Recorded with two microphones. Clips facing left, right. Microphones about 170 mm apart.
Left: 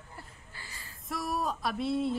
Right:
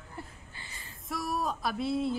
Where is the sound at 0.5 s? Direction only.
20° right (ahead or behind).